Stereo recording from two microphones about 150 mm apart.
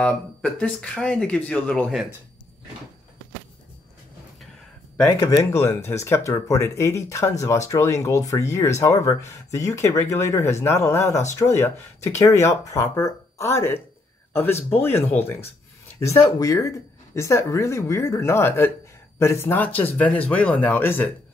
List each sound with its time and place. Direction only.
0.0 s speech: 5° left (ahead or behind)
5.2 s speech: 20° left (ahead or behind)